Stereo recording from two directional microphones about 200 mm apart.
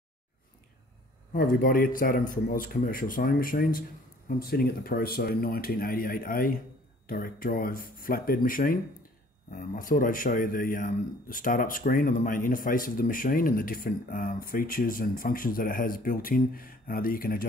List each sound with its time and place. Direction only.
1.3 s a man's voice: 45° left (ahead or behind)